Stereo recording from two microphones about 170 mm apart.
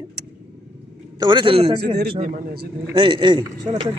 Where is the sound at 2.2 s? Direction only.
60° right (ahead or behind).